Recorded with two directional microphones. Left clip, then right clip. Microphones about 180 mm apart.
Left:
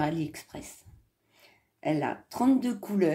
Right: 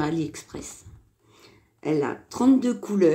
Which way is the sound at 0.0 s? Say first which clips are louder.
Right 3 dB; 15° left (ahead or behind).